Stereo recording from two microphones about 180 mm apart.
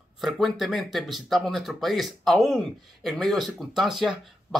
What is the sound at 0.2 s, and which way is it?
Speech, centre (ahead or behind).